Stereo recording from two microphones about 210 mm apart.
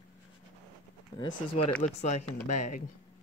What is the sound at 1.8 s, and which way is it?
Speech, 30° left (ahead or behind).